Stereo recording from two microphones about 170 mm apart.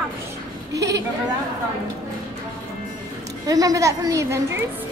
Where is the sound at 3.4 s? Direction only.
20° right (ahead or behind).